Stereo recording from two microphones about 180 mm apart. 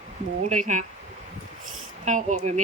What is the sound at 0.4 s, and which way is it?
Speech, 45° right (ahead or behind).